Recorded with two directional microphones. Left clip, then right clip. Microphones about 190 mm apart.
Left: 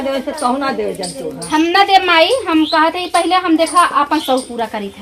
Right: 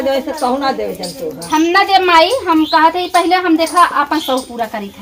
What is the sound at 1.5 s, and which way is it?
Speech, 10° left (ahead or behind).